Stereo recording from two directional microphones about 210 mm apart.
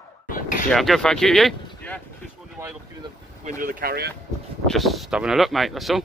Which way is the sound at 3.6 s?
40° right (ahead or behind).